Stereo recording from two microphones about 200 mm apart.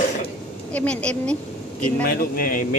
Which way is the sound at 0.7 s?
5° left (ahead or behind).